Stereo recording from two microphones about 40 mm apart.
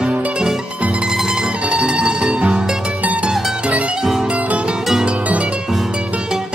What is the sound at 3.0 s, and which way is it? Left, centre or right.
Music, right.